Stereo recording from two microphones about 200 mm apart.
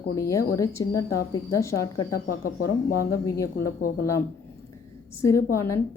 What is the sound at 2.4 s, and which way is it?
Speech, 50° left (ahead or behind).